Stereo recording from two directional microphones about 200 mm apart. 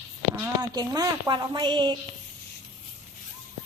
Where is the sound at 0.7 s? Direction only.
20° right (ahead or behind).